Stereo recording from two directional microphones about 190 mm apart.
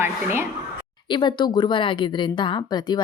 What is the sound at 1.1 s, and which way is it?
A woman's voice, 25° left (ahead or behind).